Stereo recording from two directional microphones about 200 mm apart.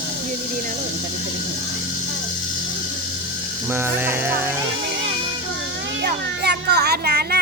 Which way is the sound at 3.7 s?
10° right (ahead or behind).